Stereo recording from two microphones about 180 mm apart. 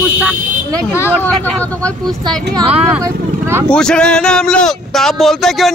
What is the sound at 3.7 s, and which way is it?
Speech, 5° left (ahead or behind).